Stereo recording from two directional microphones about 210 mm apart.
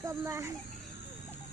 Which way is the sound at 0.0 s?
15° right (ahead or behind).